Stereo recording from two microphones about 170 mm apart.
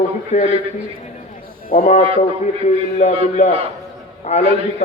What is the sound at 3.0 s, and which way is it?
A man's voice, 40° left (ahead or behind).